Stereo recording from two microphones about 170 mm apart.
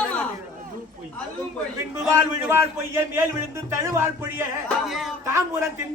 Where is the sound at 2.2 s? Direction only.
15° right (ahead or behind).